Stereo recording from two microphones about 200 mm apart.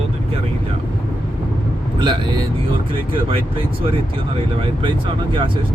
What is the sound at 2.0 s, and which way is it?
Speech, 25° right (ahead or behind).